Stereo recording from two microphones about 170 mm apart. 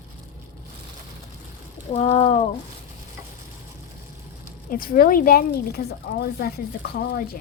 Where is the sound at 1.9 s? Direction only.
40° left (ahead or behind).